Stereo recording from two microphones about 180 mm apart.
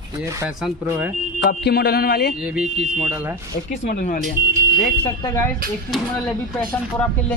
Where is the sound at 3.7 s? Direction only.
45° left (ahead or behind).